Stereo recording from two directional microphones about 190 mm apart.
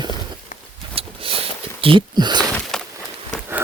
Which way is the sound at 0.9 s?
30° right (ahead or behind).